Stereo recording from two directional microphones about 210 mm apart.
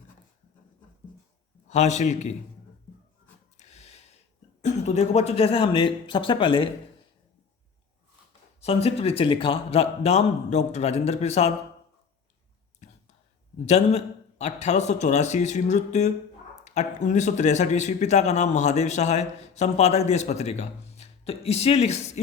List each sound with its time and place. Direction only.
1.6 s speech: 35° left (ahead or behind)
3.6 s snort: 30° left (ahead or behind)
4.6 s speech: 30° left (ahead or behind)
8.6 s speech: 30° left (ahead or behind)
13.7 s speech: 30° left (ahead or behind)